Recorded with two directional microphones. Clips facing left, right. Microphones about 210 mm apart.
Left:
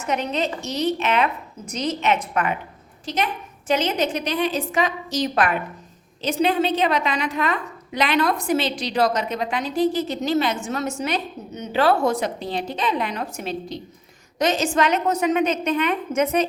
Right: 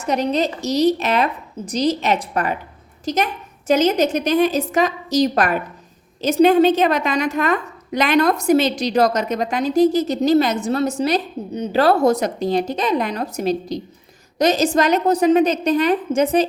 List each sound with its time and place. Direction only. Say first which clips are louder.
0.0 s a woman's voice: right 5 dB; 35° right (ahead or behind)